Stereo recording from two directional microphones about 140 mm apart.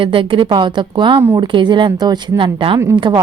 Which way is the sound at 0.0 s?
40° right (ahead or behind).